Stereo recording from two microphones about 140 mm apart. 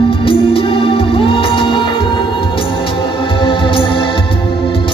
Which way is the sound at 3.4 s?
40° left (ahead or behind).